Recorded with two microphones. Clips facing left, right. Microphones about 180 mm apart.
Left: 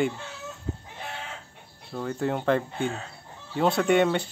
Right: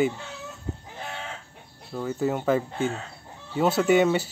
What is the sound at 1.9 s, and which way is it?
Speech, 5° right (ahead or behind).